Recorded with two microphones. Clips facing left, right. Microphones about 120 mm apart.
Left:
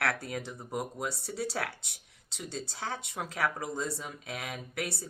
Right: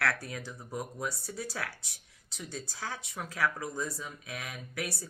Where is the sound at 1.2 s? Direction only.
65° left (ahead or behind).